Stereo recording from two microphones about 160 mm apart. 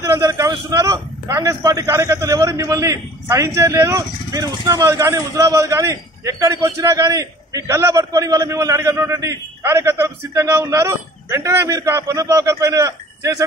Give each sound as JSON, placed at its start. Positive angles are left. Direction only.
{"t": 0.0, "sound": "a man's voice", "side_deg": -20}